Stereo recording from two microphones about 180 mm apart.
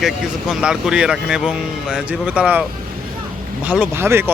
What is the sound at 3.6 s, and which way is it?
Speech, 5° right (ahead or behind).